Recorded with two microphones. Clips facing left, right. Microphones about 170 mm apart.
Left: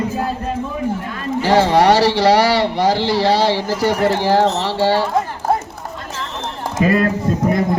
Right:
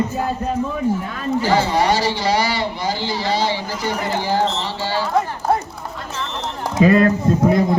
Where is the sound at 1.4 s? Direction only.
70° left (ahead or behind).